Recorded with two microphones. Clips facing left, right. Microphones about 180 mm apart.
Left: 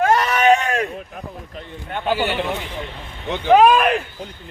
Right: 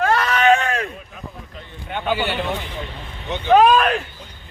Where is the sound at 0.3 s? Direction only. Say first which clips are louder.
Left 1 dB; 15° left (ahead or behind).